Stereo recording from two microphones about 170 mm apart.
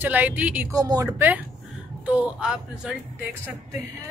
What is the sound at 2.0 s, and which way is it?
Speech, 10° right (ahead or behind).